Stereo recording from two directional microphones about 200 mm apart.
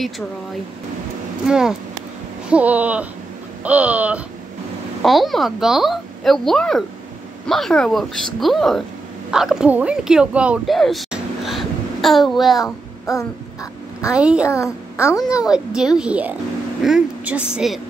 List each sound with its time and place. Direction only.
1.5 s a woman's voice: 5° right (ahead or behind)
2.5 s a sound: 5° right (ahead or behind)
5.0 s a woman's voice: centre (ahead or behind)
13.0 s a sound: 15° left (ahead or behind)
14.1 s a woman's voice: 5° right (ahead or behind)
14.5 s a child's voice: 15° left (ahead or behind)
15.2 s a woman's voice: 5° right (ahead or behind)
16.0 s a sound: 5° right (ahead or behind)
16.8 s a woman's voice: 5° right (ahead or behind)